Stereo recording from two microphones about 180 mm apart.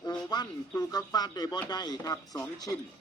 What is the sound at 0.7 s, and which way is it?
A man's voice, 20° left (ahead or behind).